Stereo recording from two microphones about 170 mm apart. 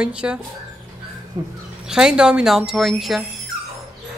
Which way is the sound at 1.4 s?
20° right (ahead or behind).